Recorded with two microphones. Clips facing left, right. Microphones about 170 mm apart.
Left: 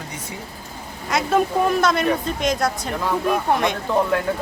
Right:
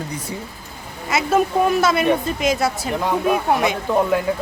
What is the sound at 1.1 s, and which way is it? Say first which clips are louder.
A woman's voice: right 1 dB; 5° right (ahead or behind).